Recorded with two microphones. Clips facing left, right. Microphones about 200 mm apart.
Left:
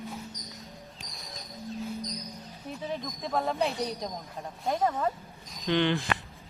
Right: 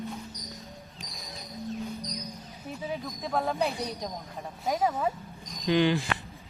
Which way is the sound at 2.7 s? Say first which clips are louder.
Even; 5° right (ahead or behind).